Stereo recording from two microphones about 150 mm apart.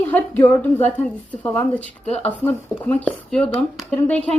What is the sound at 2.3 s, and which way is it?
Speech, 10° left (ahead or behind).